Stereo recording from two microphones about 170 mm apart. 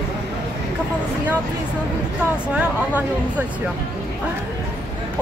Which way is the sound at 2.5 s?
10° right (ahead or behind).